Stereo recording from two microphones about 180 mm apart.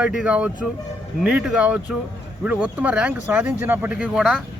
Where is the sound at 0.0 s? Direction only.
5° right (ahead or behind).